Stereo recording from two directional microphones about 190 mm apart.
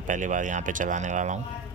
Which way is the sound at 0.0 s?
40° right (ahead or behind).